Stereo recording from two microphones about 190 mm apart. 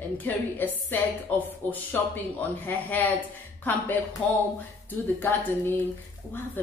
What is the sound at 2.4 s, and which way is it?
Speech, 10° left (ahead or behind).